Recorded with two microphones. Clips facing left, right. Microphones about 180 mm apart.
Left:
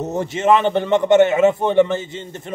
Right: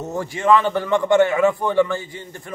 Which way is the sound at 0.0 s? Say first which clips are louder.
Left 3 dB; 20° left (ahead or behind).